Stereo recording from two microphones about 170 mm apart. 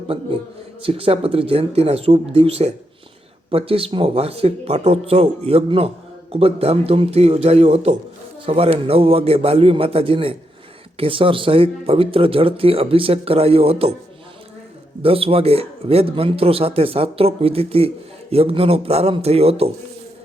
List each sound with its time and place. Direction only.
0.8 s a man's voice: 35° right (ahead or behind)
15.0 s a man's voice: 35° right (ahead or behind)